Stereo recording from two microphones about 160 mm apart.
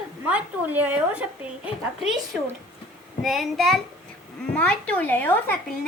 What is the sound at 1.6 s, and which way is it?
Speech, 5° right (ahead or behind).